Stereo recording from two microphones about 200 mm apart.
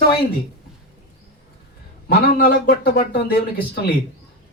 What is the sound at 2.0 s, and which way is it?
Speech, 50° left (ahead or behind).